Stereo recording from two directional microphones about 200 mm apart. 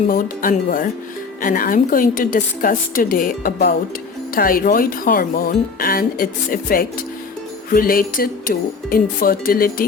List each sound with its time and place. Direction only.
0.1 s speech: 40° left (ahead or behind)